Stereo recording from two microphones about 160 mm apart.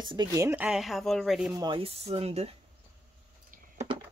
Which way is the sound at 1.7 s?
40° right (ahead or behind).